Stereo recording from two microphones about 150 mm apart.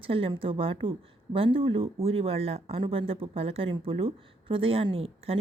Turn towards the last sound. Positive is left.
turn(degrees=-40)  # may be behind; listen again after turning